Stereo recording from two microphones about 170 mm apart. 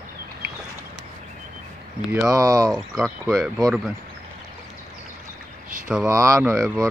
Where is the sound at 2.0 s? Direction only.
5° right (ahead or behind).